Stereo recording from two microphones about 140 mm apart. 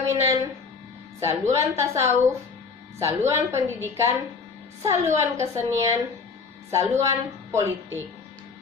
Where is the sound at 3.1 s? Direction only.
20° right (ahead or behind).